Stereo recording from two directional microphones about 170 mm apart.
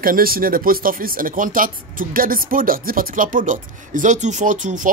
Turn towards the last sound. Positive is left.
turn(degrees=-45)  # may be behind; listen again after turning